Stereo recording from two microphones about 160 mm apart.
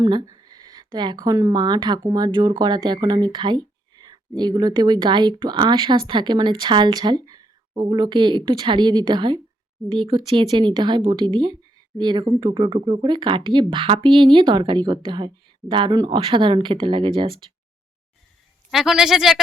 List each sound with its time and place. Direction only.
0.0 s speech: 25° right (ahead or behind)
18.7 s speech: centre (ahead or behind)